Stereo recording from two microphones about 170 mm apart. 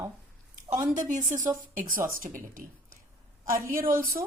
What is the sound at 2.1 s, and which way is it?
A woman's voice, 50° right (ahead or behind).